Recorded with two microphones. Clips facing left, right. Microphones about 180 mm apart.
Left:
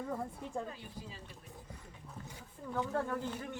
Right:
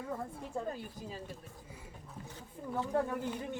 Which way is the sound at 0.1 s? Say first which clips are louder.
Even; 5° left (ahead or behind).